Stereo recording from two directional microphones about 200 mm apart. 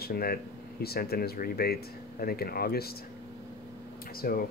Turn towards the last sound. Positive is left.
turn(degrees=45)  # may be behind; listen again after turning